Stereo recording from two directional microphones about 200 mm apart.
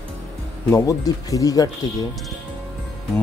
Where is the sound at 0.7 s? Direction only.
15° left (ahead or behind).